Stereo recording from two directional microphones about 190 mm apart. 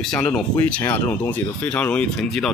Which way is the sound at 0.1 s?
5° left (ahead or behind).